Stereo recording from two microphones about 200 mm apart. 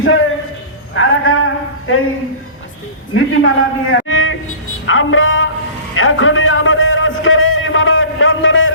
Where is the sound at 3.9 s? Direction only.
90° left.